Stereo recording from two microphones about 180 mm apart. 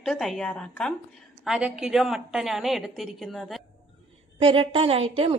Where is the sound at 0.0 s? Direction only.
Centre (ahead or behind).